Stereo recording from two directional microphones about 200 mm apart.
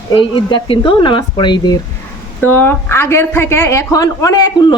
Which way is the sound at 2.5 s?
10° left (ahead or behind).